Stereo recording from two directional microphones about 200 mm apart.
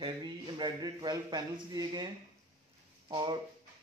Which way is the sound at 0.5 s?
20° right (ahead or behind).